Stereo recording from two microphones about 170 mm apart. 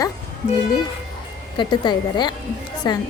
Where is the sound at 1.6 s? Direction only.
25° left (ahead or behind).